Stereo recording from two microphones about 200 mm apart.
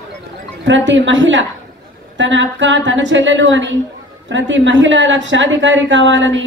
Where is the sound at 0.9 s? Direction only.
65° right (ahead or behind).